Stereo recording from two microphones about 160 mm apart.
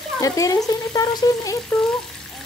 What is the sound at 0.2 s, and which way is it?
Frying, 20° left (ahead or behind).